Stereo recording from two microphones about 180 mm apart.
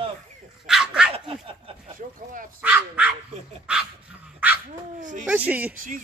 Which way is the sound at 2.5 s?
5° right (ahead or behind).